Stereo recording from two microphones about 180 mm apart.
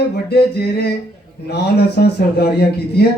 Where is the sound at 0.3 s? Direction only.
65° left (ahead or behind).